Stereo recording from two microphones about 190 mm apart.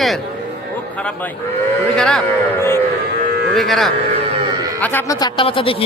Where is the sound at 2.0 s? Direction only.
5° left (ahead or behind).